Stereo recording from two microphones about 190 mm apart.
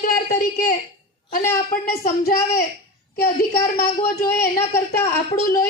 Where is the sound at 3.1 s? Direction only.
55° left (ahead or behind).